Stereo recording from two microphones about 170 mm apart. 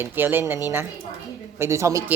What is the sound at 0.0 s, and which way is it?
Speech, 10° right (ahead or behind).